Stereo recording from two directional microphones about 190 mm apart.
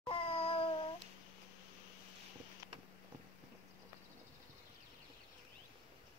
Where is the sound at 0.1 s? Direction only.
30° left (ahead or behind).